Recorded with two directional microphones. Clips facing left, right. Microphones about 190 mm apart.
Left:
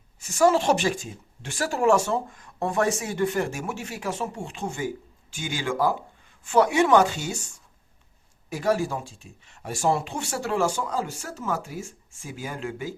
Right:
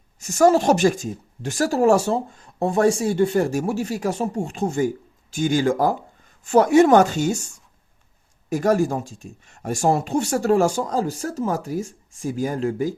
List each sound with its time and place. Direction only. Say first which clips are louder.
0.2 s speech: right 4 dB; 45° right (ahead or behind)
8.4 s speech: right 5 dB; 45° right (ahead or behind)